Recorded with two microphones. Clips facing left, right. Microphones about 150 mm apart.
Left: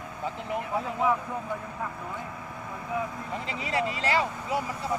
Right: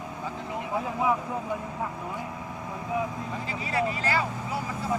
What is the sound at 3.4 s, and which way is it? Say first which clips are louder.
Speech: right 1 dB; 25° left (ahead or behind).